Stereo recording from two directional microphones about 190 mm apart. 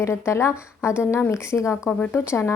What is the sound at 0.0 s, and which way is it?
A woman's voice, 15° left (ahead or behind).